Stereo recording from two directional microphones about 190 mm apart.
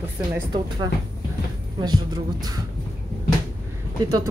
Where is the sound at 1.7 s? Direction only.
20° right (ahead or behind).